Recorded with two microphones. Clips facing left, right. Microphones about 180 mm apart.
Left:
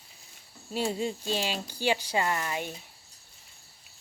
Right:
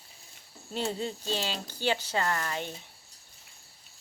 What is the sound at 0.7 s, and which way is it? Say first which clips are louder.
Speech: left 3 dB; 10° left (ahead or behind).